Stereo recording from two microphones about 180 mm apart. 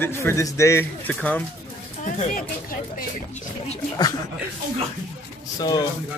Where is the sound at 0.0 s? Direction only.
15° left (ahead or behind).